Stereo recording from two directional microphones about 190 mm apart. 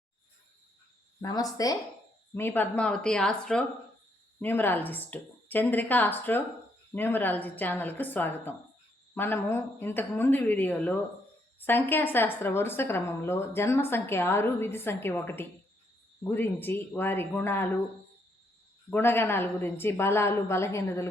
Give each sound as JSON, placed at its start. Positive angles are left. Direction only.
{"t": 1.2, "sound": "a woman's voice", "side_deg": 20}
{"t": 18.9, "sound": "a woman's voice", "side_deg": 10}